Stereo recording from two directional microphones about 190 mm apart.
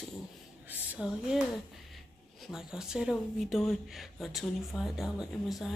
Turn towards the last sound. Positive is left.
turn(degrees=0)  # may be behind; listen again after turning